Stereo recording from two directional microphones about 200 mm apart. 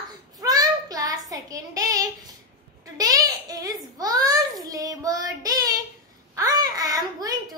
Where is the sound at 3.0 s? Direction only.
15° right (ahead or behind).